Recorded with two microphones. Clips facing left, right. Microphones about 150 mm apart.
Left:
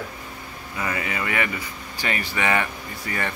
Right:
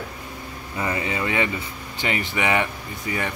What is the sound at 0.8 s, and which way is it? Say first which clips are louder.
Speech: right 2 dB; 25° right (ahead or behind).